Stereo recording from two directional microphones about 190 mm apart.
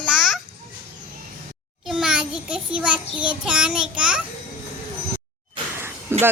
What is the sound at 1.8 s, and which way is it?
Child singing, 5° right (ahead or behind).